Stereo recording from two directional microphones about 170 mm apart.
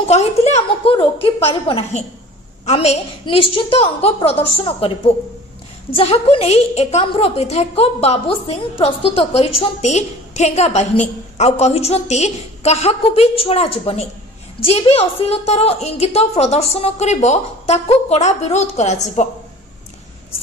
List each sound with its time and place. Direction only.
0.1 s a woman's voice: 40° left (ahead or behind)